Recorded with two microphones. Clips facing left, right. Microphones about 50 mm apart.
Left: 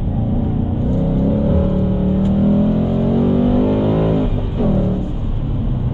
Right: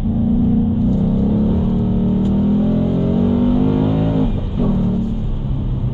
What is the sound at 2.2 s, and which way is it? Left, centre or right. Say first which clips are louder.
Vehicle: left 4 dB; centre.